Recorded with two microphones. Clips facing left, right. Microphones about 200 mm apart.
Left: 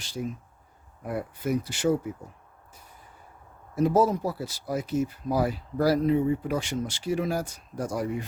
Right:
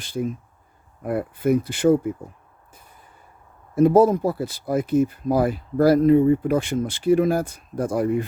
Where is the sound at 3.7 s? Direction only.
55° right (ahead or behind).